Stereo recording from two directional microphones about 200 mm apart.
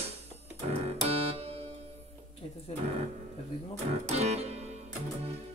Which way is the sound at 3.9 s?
30° right (ahead or behind).